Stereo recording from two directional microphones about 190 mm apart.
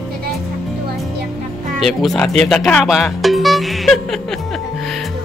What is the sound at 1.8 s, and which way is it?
Speech, centre (ahead or behind).